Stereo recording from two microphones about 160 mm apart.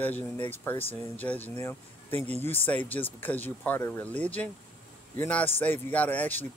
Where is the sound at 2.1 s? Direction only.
40° right (ahead or behind).